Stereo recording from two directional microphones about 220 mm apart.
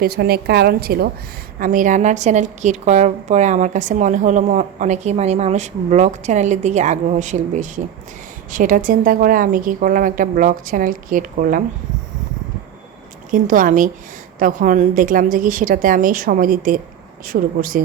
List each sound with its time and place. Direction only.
0.0 s a woman's voice: 45° right (ahead or behind)
13.3 s a woman's voice: 35° right (ahead or behind)